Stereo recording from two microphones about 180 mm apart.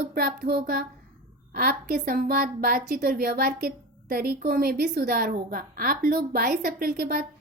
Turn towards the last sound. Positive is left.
turn(degrees=-60)  # may be behind; listen again after turning